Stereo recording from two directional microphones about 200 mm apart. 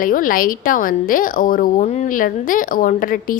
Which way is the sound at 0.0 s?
45° left (ahead or behind).